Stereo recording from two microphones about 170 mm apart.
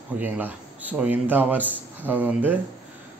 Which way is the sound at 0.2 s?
10° right (ahead or behind).